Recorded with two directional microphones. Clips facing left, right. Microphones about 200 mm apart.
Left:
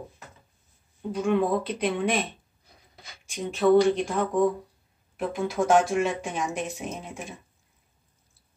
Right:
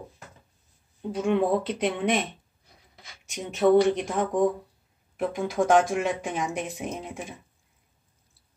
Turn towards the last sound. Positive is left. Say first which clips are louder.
# even
turn(degrees=-15)  # may be behind; listen again after turning